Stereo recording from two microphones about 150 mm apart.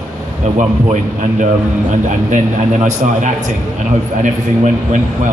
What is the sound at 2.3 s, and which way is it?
A man's voice, 55° right (ahead or behind).